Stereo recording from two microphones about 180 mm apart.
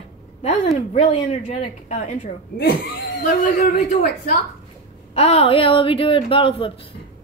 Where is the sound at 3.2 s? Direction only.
50° left (ahead or behind).